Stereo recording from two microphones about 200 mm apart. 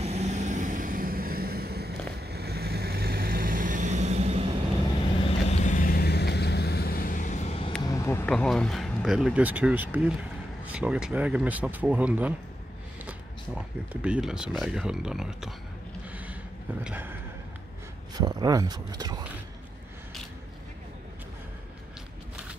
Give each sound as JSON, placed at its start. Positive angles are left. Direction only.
{"t": 0.0, "sound": "vehicle", "side_deg": -35}
{"t": 5.2, "sound": "vehicle", "side_deg": 35}
{"t": 7.8, "sound": "speech", "side_deg": 15}
{"t": 14.0, "sound": "speech", "side_deg": -5}
{"t": 16.1, "sound": "a sound", "side_deg": -10}
{"t": 16.8, "sound": "speech", "side_deg": -10}